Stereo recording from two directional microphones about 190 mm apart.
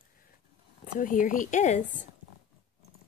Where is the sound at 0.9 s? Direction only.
45° left (ahead or behind).